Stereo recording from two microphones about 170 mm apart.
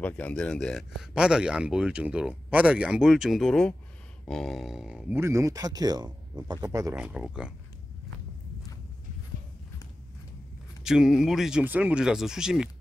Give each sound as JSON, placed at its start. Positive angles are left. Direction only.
{"t": 0.0, "sound": "speech", "side_deg": 5}
{"t": 5.2, "sound": "speech", "side_deg": -15}
{"t": 7.0, "sound": "speech", "side_deg": -5}
{"t": 10.8, "sound": "speech", "side_deg": -5}